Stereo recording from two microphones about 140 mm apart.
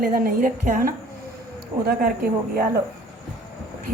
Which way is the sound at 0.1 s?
85° right.